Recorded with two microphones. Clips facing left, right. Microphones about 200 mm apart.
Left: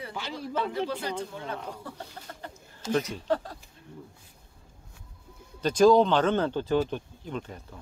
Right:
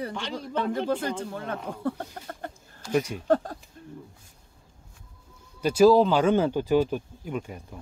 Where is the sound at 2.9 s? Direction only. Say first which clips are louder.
Right 2 dB; 10° right (ahead or behind).